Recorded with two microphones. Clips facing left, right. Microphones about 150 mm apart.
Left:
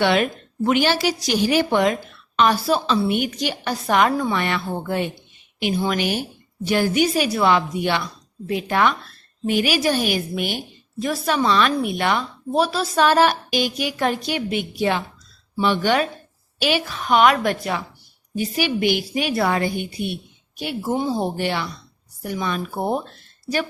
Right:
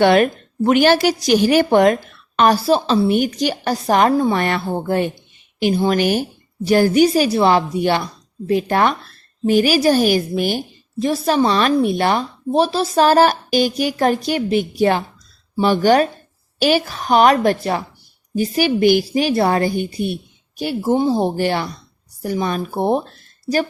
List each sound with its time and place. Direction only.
0.0 s a woman's voice: 45° right (ahead or behind)
2.6 s a woman's voice: 35° right (ahead or behind)